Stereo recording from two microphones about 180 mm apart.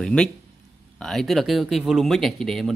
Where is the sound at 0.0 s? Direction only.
5° left (ahead or behind).